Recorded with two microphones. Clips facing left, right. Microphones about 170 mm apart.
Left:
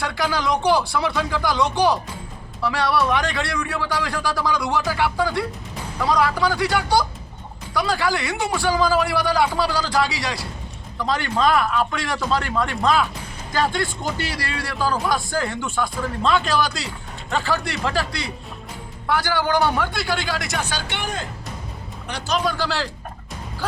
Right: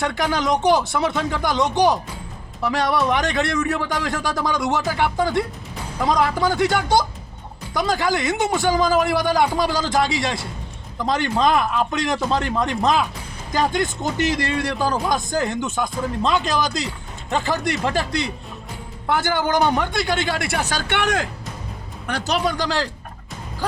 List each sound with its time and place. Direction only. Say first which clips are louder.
0.0 s speech: right 2 dB; 20° right (ahead or behind)
20.5 s speech: right 3 dB; 40° right (ahead or behind)
20.8 s speech: right 7 dB; 65° right (ahead or behind)
22.0 s a man's voice: right 2 dB; 50° right (ahead or behind)
22.5 s speech: right 2 dB; 15° right (ahead or behind)